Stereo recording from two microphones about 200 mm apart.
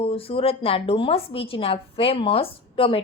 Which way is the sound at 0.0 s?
30° left (ahead or behind).